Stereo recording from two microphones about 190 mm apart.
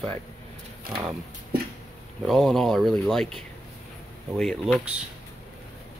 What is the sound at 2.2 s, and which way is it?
Speech, centre (ahead or behind).